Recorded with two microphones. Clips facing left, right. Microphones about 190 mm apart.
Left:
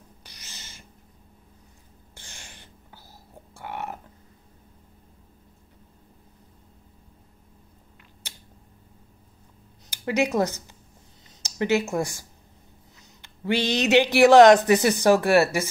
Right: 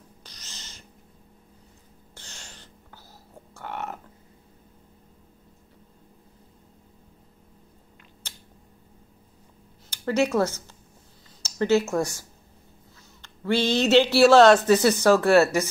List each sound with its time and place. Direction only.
0.2 s cat: 10° left (ahead or behind)
2.1 s a sound: 15° left (ahead or behind)
9.8 s speech: 15° left (ahead or behind)